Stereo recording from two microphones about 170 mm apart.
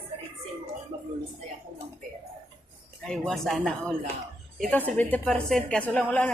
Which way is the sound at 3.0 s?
Centre (ahead or behind).